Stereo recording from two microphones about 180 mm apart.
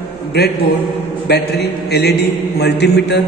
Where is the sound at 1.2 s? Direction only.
65° left (ahead or behind).